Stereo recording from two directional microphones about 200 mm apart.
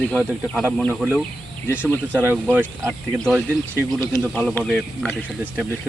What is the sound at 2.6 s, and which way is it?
Speech, 10° right (ahead or behind).